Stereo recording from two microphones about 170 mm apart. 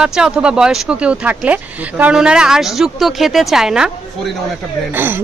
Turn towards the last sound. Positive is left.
turn(degrees=-10)  # may be behind; listen again after turning